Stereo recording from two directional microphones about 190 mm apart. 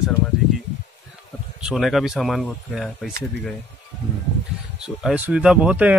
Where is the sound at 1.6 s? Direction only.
Centre (ahead or behind).